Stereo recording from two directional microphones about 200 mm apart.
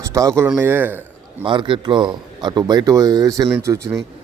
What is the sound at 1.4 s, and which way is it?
A man's voice, 25° right (ahead or behind).